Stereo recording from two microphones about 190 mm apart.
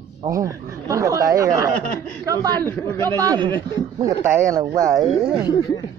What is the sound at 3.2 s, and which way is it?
Speech, 20° right (ahead or behind).